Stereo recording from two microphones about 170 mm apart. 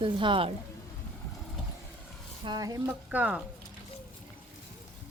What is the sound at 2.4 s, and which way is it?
Speech, 25° right (ahead or behind).